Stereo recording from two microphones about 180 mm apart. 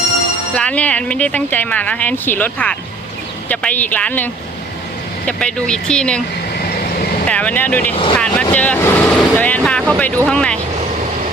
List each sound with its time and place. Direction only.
0.5 s speech: 5° left (ahead or behind)
7.3 s speech: 10° left (ahead or behind)